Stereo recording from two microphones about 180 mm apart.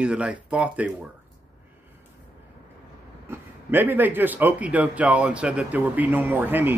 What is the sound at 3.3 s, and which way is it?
Speech, 10° right (ahead or behind).